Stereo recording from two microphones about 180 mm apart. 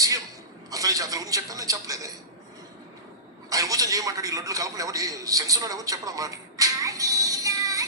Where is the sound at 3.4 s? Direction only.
20° right (ahead or behind).